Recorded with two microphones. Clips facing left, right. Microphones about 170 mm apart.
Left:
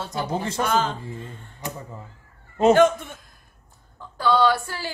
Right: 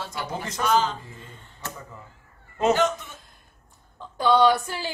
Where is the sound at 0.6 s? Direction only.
50° left (ahead or behind).